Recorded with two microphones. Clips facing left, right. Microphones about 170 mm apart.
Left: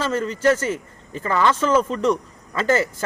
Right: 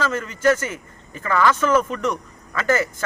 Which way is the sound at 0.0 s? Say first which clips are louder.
Left 1 dB; 30° left (ahead or behind).